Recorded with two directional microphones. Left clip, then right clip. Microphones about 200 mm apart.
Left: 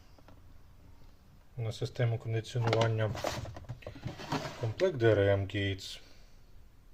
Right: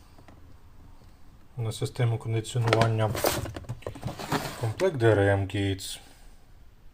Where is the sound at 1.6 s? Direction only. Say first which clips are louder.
Right 4 dB; 15° left (ahead or behind).